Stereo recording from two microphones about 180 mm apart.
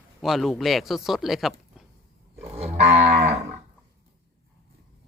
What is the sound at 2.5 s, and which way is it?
Moo, 35° right (ahead or behind).